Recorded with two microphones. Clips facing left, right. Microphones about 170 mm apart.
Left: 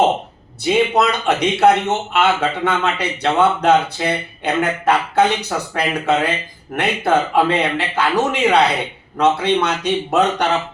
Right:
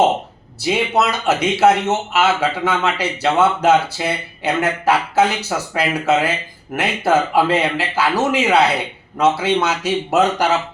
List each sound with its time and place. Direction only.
0.6 s a man's voice: 5° right (ahead or behind)